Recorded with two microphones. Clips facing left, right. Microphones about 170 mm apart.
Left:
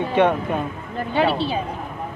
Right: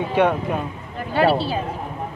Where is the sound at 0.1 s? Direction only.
5° right (ahead or behind).